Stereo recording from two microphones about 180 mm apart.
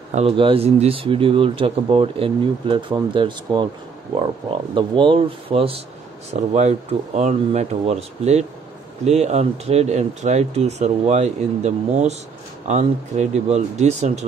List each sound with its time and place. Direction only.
0.1 s speech: 30° right (ahead or behind)